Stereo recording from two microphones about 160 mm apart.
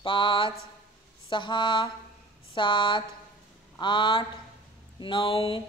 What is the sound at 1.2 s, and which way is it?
Mantra, 30° left (ahead or behind).